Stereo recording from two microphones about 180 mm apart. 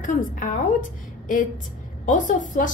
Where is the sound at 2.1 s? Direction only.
45° left (ahead or behind).